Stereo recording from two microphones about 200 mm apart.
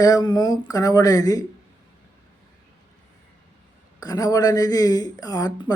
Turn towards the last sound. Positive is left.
turn(degrees=20)  # may be behind; listen again after turning